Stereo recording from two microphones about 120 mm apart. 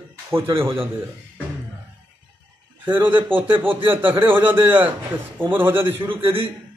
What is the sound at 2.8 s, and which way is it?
Speech, 15° right (ahead or behind).